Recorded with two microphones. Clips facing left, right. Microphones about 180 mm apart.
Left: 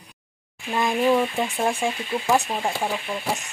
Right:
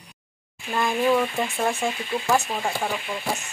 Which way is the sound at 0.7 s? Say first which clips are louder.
Left 1 dB; 15° left (ahead or behind).